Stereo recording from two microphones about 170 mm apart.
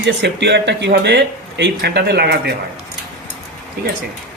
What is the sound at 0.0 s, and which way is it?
Speech, 90° right.